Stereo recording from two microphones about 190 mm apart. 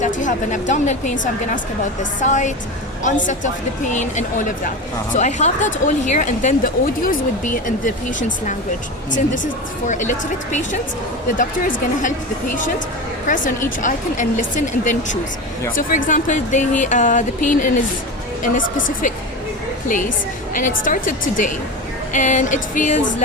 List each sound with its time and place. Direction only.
0.0 s speech: 40° left (ahead or behind)
9.1 s speech: 40° left (ahead or behind)
20.5 s speech: 45° left (ahead or behind)